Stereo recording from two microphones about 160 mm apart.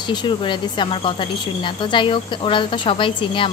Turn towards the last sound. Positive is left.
turn(degrees=30)  # may be behind; listen again after turning